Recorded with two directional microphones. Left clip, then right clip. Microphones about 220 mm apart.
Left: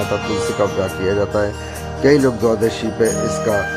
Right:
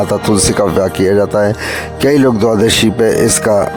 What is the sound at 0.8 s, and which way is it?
Speech, 50° right (ahead or behind).